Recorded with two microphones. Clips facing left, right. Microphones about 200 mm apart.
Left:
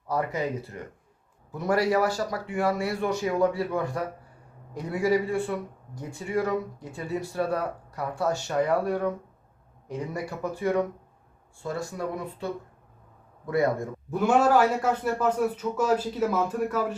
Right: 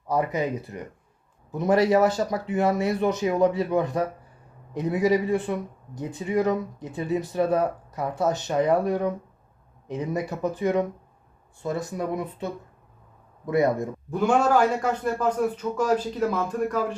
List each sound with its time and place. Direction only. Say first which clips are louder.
0.1 s speech: right 3 dB; 20° right (ahead or behind)
14.1 s a man's voice: even; 5° left (ahead or behind)